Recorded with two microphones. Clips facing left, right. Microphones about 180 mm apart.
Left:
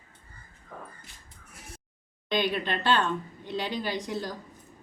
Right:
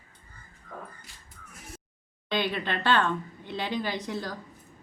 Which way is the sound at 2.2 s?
15° left (ahead or behind).